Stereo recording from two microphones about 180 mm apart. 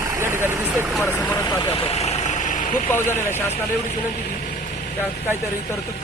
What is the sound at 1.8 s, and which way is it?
Vehicle, 35° left (ahead or behind).